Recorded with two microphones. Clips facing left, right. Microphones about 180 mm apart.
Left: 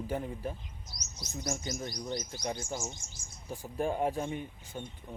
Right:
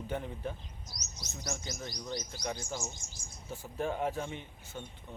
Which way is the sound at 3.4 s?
15° left (ahead or behind).